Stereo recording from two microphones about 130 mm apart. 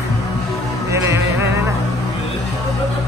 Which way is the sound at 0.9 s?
20° right (ahead or behind).